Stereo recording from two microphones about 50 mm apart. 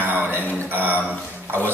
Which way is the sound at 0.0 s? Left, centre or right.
Right.